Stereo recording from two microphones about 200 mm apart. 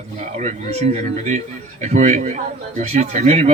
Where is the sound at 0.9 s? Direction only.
35° right (ahead or behind).